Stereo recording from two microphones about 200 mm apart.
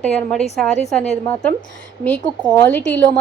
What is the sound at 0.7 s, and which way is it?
Speech, 35° left (ahead or behind).